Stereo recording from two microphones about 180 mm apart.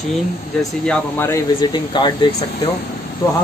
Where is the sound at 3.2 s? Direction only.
20° left (ahead or behind).